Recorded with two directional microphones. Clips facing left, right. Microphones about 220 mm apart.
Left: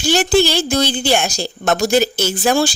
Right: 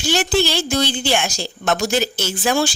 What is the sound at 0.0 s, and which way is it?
A woman's voice, 40° left (ahead or behind).